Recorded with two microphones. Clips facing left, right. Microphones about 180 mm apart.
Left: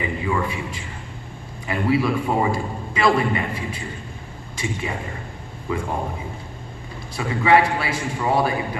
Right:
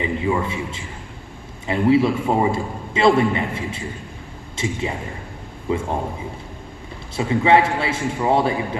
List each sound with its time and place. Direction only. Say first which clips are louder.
0.0 s a man's voice: right 2 dB; 25° right (ahead or behind)
7.2 s a man's voice: right 2 dB; 25° right (ahead or behind)